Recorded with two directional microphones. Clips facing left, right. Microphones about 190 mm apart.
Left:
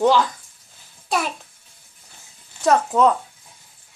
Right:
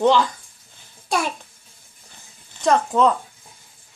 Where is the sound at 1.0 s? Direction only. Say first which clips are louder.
Even; centre (ahead or behind).